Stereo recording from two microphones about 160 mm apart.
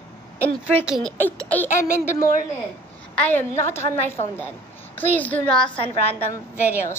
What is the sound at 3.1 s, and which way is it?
A woman's voice, 10° left (ahead or behind).